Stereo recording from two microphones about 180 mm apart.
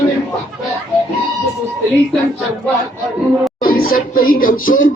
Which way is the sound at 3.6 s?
55° left (ahead or behind).